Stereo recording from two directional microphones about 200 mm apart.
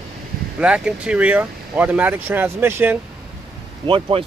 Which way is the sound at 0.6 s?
5° right (ahead or behind).